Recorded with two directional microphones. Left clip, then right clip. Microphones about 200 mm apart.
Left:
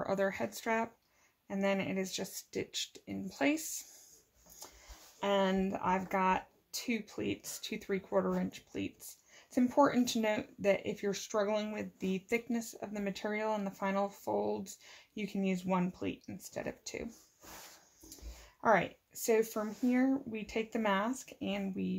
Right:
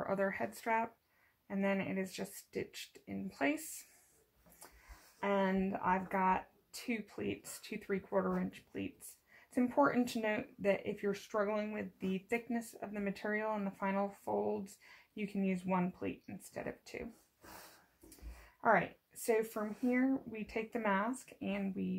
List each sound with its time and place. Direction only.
0.0 s speech: 40° left (ahead or behind)
5.2 s speech: 40° left (ahead or behind)
18.6 s speech: 40° left (ahead or behind)